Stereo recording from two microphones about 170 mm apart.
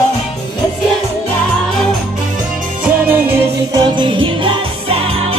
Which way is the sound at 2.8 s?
10° right (ahead or behind).